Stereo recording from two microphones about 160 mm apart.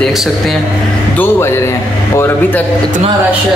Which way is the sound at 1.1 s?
15° left (ahead or behind).